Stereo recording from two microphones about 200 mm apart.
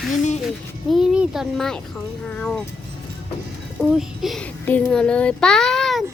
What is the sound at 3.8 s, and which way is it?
A child's voice, centre (ahead or behind).